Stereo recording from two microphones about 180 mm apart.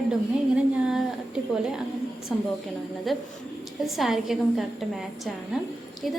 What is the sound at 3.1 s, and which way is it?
A woman's voice, centre (ahead or behind).